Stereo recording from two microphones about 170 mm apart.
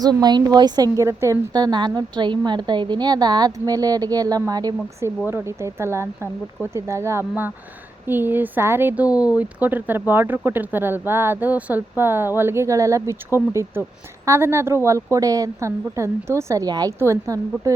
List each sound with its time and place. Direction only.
0.0 s a woman's voice: 25° right (ahead or behind)
9.0 s speech: 20° left (ahead or behind)
9.4 s speech: 10° right (ahead or behind)